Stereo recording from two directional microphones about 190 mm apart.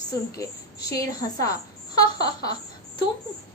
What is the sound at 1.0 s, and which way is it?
Speech, 15° left (ahead or behind).